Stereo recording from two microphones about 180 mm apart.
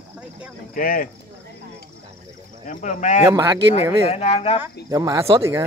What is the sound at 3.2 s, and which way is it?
Speech, 20° right (ahead or behind).